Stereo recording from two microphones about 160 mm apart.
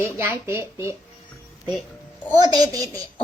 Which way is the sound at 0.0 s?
15° right (ahead or behind).